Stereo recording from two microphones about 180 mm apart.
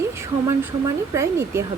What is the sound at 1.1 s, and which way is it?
Speech, 15° right (ahead or behind).